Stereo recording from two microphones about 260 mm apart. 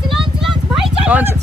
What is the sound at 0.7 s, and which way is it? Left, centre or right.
Vehicle, centre.